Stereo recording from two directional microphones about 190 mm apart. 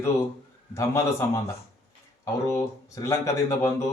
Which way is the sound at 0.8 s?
15° left (ahead or behind).